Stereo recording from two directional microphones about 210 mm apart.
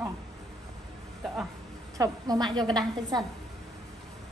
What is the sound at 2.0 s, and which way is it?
A woman's voice, 20° right (ahead or behind).